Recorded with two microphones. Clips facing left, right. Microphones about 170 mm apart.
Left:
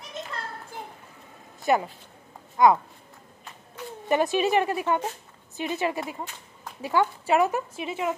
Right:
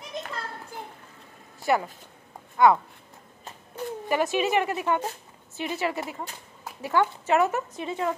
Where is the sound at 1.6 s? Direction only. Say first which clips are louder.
Left 1 dB; 20° left (ahead or behind).